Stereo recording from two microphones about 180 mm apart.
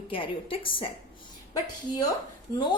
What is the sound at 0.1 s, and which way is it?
Speech, 30° left (ahead or behind).